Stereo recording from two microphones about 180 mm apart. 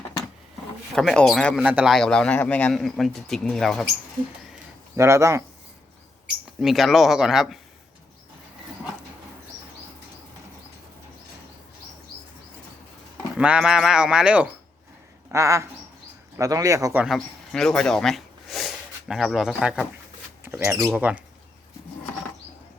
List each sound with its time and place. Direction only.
0.9 s a man's voice: 5° left (ahead or behind)
4.9 s speech: 15° right (ahead or behind)
6.6 s a man's voice: centre (ahead or behind)
13.3 s a man's voice: 5° right (ahead or behind)
17.2 s speech: 5° left (ahead or behind)